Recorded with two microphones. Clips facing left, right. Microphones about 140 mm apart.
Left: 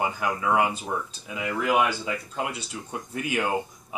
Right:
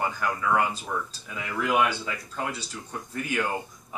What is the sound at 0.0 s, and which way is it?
Speech, 15° left (ahead or behind).